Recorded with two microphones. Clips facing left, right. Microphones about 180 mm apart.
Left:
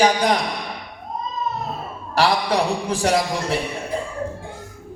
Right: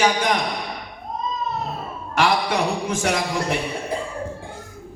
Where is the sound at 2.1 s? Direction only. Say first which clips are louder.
Left 1 dB; 35° left (ahead or behind).